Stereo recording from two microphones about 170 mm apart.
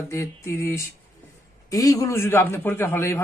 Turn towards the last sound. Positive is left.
turn(degrees=15)  # may be behind; listen again after turning